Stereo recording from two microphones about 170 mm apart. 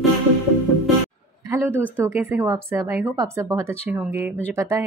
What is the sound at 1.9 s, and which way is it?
A woman's voice, 15° right (ahead or behind).